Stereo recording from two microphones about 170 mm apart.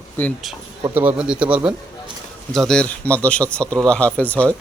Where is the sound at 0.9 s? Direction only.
10° right (ahead or behind).